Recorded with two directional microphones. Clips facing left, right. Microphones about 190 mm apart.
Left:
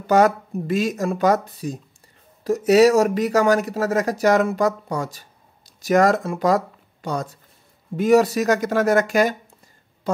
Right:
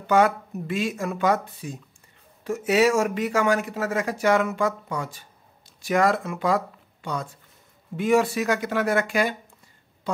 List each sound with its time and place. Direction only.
0.0 s speech: 40° left (ahead or behind)